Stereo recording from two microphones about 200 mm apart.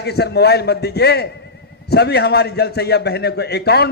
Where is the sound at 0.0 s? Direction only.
55° left (ahead or behind).